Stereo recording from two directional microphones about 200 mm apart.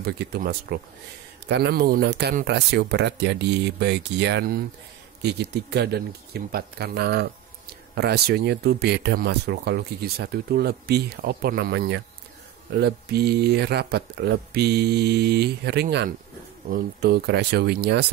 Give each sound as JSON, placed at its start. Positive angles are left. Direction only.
{"t": 0.0, "sound": "speech", "side_deg": -55}